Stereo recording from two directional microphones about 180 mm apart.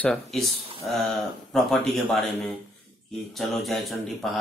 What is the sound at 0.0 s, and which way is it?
Speech, 5° left (ahead or behind).